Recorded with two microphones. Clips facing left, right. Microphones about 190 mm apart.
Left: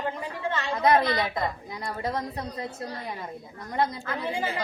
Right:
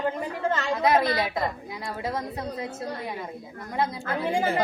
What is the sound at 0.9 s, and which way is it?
A woman's voice, 5° right (ahead or behind).